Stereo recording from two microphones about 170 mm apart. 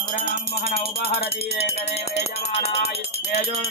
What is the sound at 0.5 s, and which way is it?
Music, 65° left (ahead or behind).